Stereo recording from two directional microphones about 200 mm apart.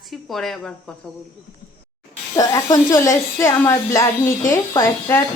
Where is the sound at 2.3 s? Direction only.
15° left (ahead or behind).